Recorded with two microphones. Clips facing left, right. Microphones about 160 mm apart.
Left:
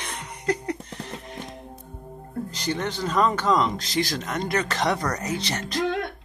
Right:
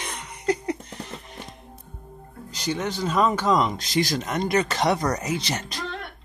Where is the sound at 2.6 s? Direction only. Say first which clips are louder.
Right 2 dB; 10° right (ahead or behind).